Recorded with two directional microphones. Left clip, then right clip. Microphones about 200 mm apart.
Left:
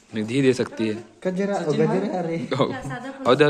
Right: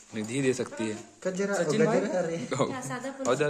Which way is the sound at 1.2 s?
35° left (ahead or behind).